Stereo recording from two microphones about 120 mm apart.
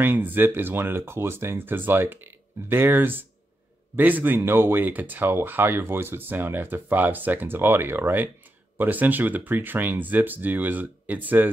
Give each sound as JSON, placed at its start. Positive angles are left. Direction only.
{"t": 0.0, "sound": "speech", "side_deg": -15}